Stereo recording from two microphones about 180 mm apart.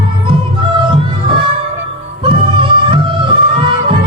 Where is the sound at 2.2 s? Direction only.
30° right (ahead or behind).